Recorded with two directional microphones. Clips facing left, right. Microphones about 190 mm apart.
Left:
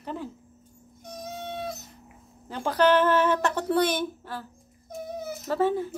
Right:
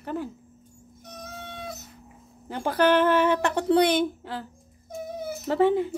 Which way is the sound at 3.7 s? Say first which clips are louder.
Right 4 dB; 65° right (ahead or behind).